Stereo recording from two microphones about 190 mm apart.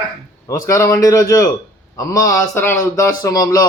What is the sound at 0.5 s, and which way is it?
A man's voice, 15° left (ahead or behind).